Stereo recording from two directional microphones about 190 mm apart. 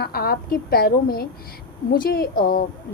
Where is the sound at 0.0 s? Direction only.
55° left (ahead or behind).